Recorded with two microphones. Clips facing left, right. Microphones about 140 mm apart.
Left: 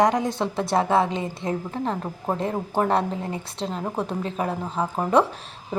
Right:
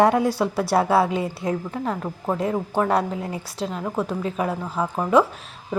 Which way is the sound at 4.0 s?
30° left (ahead or behind).